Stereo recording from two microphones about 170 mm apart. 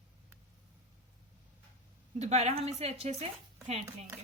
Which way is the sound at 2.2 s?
40° right (ahead or behind).